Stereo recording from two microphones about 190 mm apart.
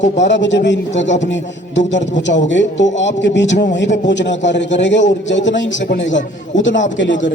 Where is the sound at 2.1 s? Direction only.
70° left (ahead or behind).